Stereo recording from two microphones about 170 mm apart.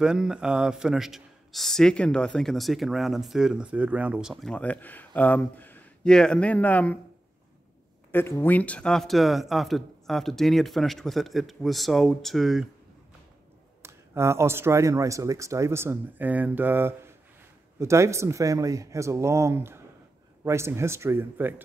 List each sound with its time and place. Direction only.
0.0 s a man's voice: 5° right (ahead or behind)
8.1 s a man's voice: 10° left (ahead or behind)
13.8 s speech: 15° right (ahead or behind)